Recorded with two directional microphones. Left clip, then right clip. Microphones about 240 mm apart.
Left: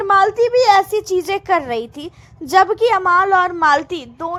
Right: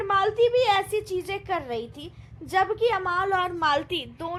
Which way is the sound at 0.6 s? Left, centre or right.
Left.